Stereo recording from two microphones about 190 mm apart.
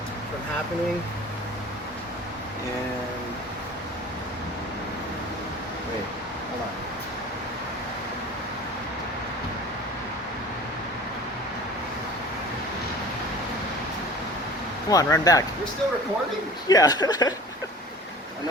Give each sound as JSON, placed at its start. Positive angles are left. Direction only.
{"t": 14.8, "sound": "speech", "side_deg": 20}
{"t": 16.6, "sound": "speech", "side_deg": 20}